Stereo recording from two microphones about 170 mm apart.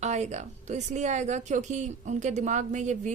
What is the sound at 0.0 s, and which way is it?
A woman's voice, 45° right (ahead or behind).